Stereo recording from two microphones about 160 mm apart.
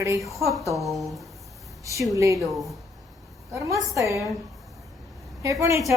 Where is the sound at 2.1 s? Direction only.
20° right (ahead or behind).